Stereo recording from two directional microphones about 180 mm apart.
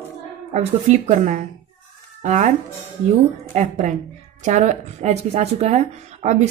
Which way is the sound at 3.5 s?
40° right (ahead or behind).